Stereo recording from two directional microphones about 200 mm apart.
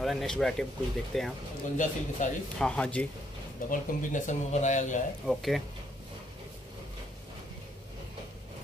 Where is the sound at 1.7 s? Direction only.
40° left (ahead or behind).